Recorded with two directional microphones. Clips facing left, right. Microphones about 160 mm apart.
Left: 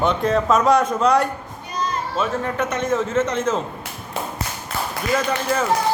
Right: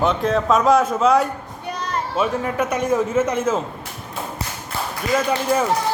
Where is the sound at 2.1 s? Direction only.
10° right (ahead or behind).